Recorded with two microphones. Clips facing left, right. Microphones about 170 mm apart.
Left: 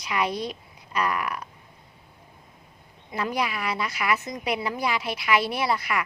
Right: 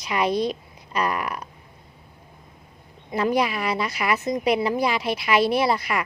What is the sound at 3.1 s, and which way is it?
A woman's voice, 30° right (ahead or behind).